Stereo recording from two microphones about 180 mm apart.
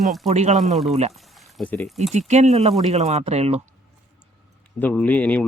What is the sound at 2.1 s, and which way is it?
Speech, 40° right (ahead or behind).